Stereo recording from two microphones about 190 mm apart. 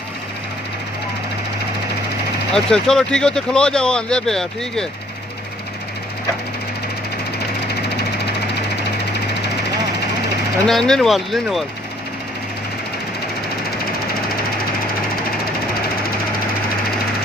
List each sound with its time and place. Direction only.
2.5 s speech: 5° left (ahead or behind)
10.7 s speech: centre (ahead or behind)